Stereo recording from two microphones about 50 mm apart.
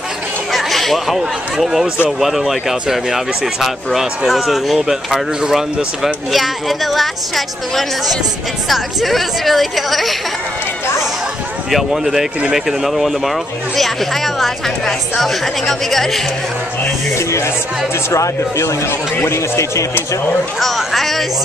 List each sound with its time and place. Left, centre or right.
0.5 s a woman's voice: centre
11.7 s a woman's voice: centre
18.1 s speech: left
18.9 s speech: left
20.6 s a woman's voice: centre